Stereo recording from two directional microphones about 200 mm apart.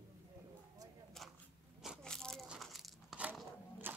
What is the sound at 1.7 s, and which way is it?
Crunch, centre (ahead or behind).